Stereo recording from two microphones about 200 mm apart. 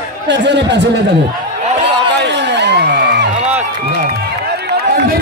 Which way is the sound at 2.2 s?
60° right (ahead or behind).